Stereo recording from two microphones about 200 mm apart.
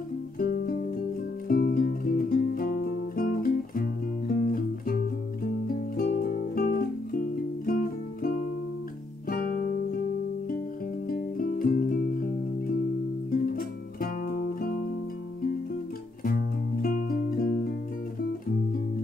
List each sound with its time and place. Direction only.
0.4 s music: 45° left (ahead or behind)
9.3 s music: 45° left (ahead or behind)
11.1 s music: 45° left (ahead or behind)
13.3 s music: 45° left (ahead or behind)
16.3 s music: 45° left (ahead or behind)